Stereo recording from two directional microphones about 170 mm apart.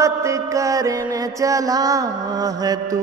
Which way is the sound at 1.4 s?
20° right (ahead or behind).